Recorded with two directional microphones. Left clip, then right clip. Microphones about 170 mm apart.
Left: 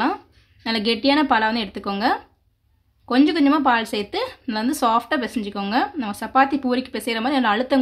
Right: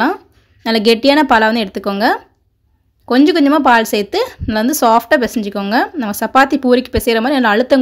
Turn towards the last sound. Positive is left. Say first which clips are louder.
# right 8 dB
turn(degrees=-30)  # may be behind; listen again after turning